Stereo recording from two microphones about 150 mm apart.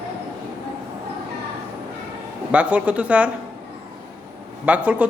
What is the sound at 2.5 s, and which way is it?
Speech, 10° right (ahead or behind).